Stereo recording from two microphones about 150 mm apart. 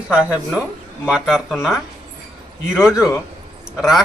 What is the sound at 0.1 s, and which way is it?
A man's voice, 10° right (ahead or behind).